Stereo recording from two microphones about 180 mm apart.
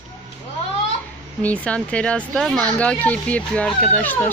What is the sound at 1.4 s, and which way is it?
Speech, 5° left (ahead or behind).